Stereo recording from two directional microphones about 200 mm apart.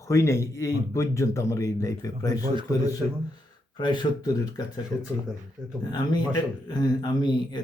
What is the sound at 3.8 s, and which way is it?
Speech, 25° left (ahead or behind).